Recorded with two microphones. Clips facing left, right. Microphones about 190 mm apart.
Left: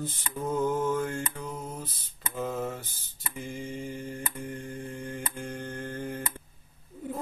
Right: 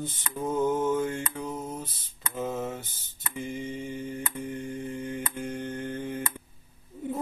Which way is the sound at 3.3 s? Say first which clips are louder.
Right 3 dB; 25° right (ahead or behind).